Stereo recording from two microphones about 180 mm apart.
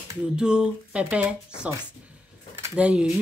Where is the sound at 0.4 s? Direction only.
5° right (ahead or behind).